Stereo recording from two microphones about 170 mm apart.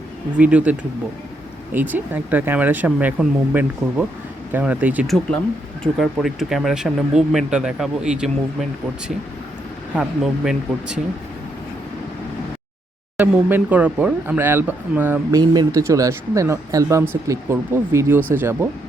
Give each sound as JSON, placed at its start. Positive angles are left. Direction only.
{"t": 0.3, "sound": "speech", "side_deg": -10}
{"t": 9.9, "sound": "speech", "side_deg": -5}
{"t": 13.1, "sound": "speech", "side_deg": -10}